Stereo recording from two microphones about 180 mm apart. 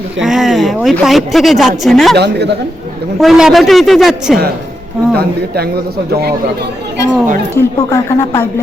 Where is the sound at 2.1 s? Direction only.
70° right (ahead or behind).